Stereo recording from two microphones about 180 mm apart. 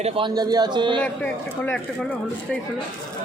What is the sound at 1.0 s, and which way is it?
Speech, 5° left (ahead or behind).